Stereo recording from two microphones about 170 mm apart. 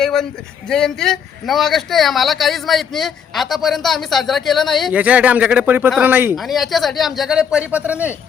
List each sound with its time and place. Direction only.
0.0 s a man's voice: 5° left (ahead or behind)
6.3 s a man's voice: centre (ahead or behind)